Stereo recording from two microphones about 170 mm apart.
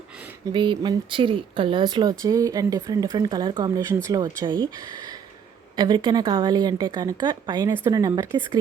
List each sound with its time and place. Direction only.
0.5 s speech: 30° right (ahead or behind)
5.7 s speech: 25° right (ahead or behind)